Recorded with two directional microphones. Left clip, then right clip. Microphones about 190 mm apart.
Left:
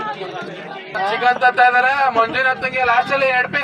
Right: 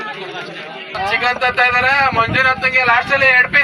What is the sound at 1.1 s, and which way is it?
Speech, 45° left (ahead or behind).